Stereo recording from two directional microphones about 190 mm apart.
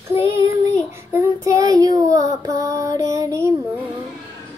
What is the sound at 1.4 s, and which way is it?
Child singing, 20° right (ahead or behind).